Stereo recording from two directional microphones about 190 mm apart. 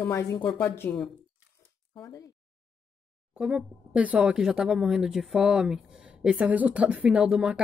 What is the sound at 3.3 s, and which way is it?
Speech, 5° right (ahead or behind).